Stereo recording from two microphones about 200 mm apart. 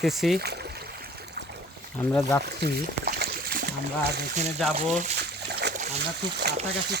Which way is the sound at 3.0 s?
45° right (ahead or behind).